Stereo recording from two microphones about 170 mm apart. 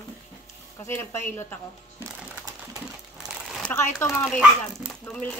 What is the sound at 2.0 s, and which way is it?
Music, 20° right (ahead or behind).